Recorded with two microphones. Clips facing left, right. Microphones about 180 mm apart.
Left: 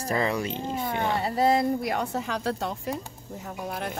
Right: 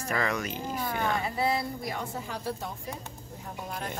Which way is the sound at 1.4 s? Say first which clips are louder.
Left 8 dB; 45° left (ahead or behind).